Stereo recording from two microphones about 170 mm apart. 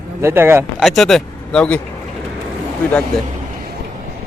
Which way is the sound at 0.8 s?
Centre (ahead or behind).